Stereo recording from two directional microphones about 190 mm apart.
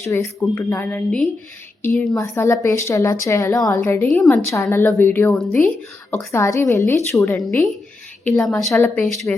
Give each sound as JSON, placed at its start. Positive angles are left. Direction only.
{"t": 0.0, "sound": "a woman's voice", "side_deg": 15}
{"t": 8.4, "sound": "speech", "side_deg": 0}
{"t": 8.7, "sound": "a woman's voice", "side_deg": 15}
{"t": 9.0, "sound": "speech", "side_deg": 0}